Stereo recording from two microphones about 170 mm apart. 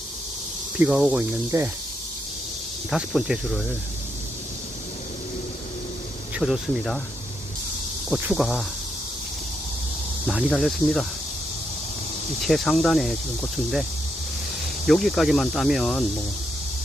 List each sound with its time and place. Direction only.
0.8 s speech: 5° right (ahead or behind)
1.5 s speech: 15° right (ahead or behind)
2.9 s speech: 5° right (ahead or behind)
6.4 s speech: centre (ahead or behind)
8.1 s speech: 5° right (ahead or behind)
10.2 s speech: 5° right (ahead or behind)
12.4 s speech: centre (ahead or behind)
14.8 s speech: centre (ahead or behind)